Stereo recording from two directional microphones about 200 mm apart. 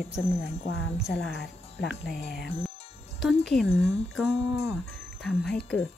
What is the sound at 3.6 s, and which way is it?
Speech, 30° left (ahead or behind).